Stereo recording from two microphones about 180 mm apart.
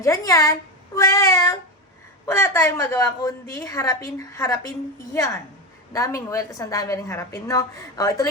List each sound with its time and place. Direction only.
0.0 s a woman's voice: 15° left (ahead or behind)
0.9 s meow: 20° left (ahead or behind)
2.2 s a woman's voice: 15° left (ahead or behind)
5.9 s a woman's voice: 15° left (ahead or behind)